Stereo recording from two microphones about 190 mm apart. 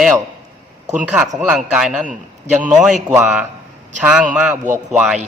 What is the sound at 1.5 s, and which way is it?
A man's voice, 5° right (ahead or behind).